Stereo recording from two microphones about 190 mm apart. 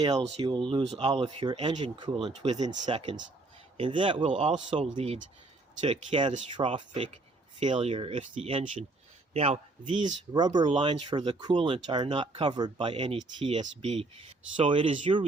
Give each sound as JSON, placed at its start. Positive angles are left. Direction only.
{"t": 0.3, "sound": "speech", "side_deg": -25}
{"t": 4.2, "sound": "a man's voice", "side_deg": -40}